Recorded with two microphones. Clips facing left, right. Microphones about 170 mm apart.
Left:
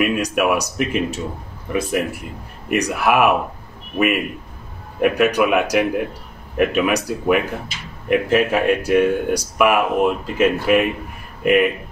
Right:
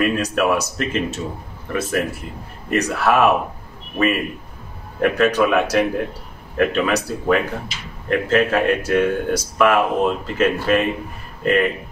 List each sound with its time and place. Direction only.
0.0 s speech: 15° left (ahead or behind)
5.0 s speech: 15° left (ahead or behind)